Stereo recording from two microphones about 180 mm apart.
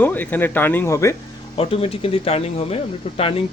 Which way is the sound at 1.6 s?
30° left (ahead or behind).